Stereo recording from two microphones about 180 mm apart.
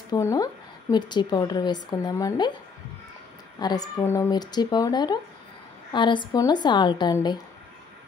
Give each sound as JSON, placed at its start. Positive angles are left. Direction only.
{"t": 0.1, "sound": "a woman's voice", "side_deg": 20}
{"t": 3.5, "sound": "a woman's voice", "side_deg": 20}